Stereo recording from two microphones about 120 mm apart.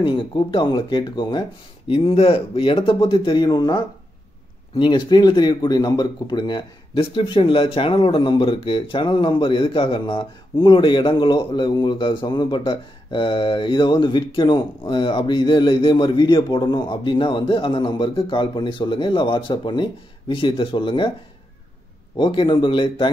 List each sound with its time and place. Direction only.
0.0 s a man's voice: 45° left (ahead or behind)
22.1 s a man's voice: 40° left (ahead or behind)